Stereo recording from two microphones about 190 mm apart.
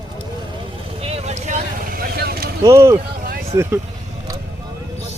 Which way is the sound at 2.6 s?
15° right (ahead or behind).